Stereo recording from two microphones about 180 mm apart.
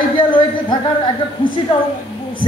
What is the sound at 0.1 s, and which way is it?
Speech, 25° left (ahead or behind).